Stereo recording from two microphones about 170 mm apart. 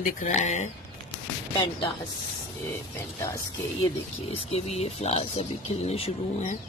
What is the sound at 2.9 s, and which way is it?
Speech, 15° left (ahead or behind).